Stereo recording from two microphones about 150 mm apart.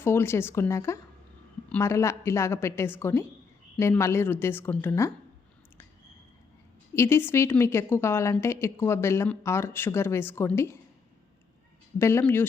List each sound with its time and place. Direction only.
0.0 s a woman's voice: 15° left (ahead or behind)
6.9 s a woman's voice: 15° left (ahead or behind)
11.9 s a woman's voice: 15° left (ahead or behind)